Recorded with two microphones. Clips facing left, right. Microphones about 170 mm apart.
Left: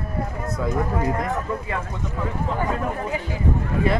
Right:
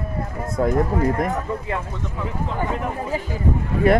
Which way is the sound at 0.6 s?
50° right (ahead or behind).